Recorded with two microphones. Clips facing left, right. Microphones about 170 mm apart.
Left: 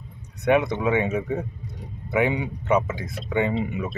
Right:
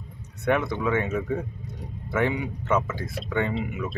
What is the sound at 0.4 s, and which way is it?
Speech, 20° left (ahead or behind).